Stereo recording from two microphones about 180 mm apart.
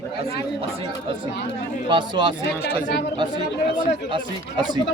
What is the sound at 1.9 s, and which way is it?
Speech, 25° right (ahead or behind).